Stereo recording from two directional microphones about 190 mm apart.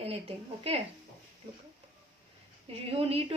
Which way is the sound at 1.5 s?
30° right (ahead or behind).